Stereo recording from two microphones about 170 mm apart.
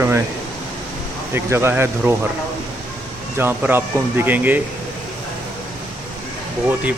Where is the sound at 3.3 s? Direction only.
10° right (ahead or behind).